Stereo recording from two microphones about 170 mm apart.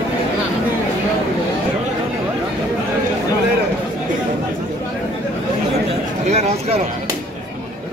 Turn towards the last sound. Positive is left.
turn(degrees=-40)  # may be behind; listen again after turning